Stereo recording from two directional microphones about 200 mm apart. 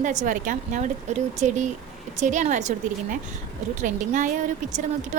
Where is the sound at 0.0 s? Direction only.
40° right (ahead or behind).